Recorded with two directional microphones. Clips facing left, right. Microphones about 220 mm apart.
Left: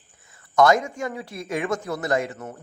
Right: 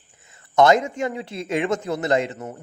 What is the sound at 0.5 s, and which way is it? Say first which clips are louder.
Speech: right 2 dB; 25° right (ahead or behind).